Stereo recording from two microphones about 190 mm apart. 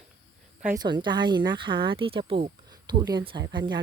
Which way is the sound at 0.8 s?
25° right (ahead or behind).